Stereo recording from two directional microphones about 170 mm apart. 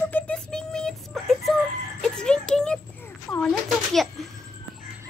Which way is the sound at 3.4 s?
Centre (ahead or behind).